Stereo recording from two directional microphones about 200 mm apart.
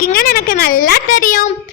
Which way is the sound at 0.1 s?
45° left (ahead or behind).